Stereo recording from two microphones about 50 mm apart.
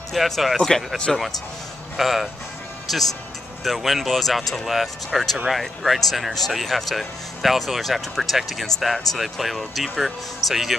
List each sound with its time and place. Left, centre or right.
0.1 s speech: centre